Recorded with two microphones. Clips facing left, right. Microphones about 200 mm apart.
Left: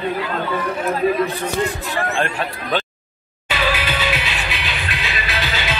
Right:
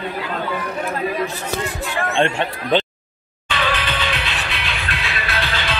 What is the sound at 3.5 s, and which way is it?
Music, 5° left (ahead or behind).